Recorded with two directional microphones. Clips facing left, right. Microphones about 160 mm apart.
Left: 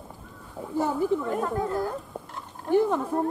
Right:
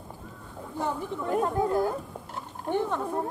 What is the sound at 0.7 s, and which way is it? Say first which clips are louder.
Speech: left 7 dB; 5° left (ahead or behind).